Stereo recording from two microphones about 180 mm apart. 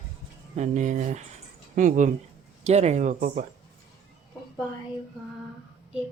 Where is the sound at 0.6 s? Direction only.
40° right (ahead or behind).